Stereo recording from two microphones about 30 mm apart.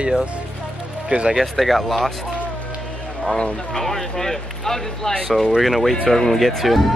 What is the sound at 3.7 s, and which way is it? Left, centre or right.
Speech, centre.